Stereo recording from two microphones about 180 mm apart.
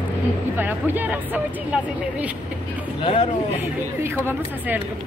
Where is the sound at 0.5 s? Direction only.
10° right (ahead or behind).